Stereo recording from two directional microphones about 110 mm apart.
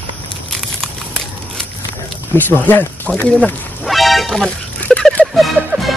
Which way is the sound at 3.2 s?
10° left (ahead or behind).